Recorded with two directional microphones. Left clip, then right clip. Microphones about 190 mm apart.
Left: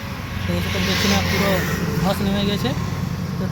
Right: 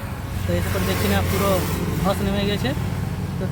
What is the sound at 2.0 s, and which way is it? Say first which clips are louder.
Speech: even; 5° right (ahead or behind).